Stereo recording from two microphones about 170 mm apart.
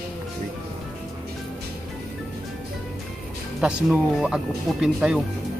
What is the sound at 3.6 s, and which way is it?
Speech, 5° right (ahead or behind).